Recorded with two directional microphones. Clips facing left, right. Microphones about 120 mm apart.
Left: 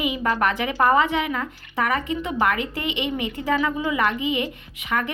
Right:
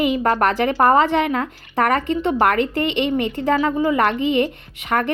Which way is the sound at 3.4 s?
40° right (ahead or behind).